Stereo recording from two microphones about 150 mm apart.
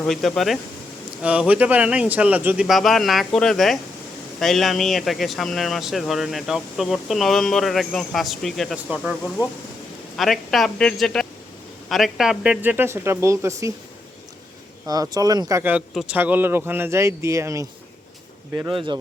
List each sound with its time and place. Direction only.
0.0 s speech: centre (ahead or behind); by 13.7 s 20° right (ahead or behind)
14.8 s speech: 25° right (ahead or behind)
18.7 s speech: 35° right (ahead or behind)